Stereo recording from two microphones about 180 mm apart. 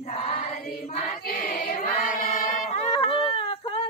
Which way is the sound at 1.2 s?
50° left (ahead or behind).